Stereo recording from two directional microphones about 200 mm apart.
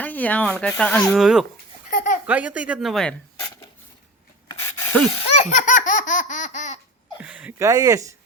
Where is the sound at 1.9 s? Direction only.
40° left (ahead or behind).